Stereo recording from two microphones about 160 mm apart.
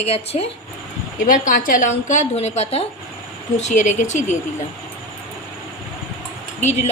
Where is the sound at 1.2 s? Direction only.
60° left (ahead or behind).